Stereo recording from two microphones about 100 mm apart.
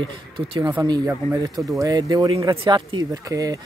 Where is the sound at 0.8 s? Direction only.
45° right (ahead or behind).